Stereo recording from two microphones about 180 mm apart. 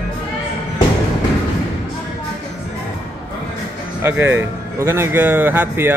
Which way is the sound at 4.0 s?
10° right (ahead or behind).